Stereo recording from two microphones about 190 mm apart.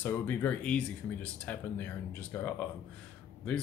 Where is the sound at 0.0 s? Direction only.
10° left (ahead or behind).